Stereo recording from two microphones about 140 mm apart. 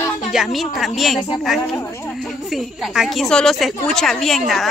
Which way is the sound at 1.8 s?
15° left (ahead or behind).